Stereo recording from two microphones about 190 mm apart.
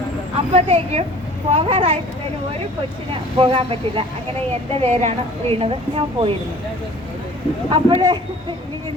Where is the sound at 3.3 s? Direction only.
30° right (ahead or behind).